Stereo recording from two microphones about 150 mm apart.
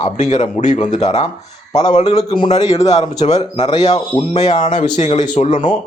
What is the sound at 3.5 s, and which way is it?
Speech, 40° left (ahead or behind).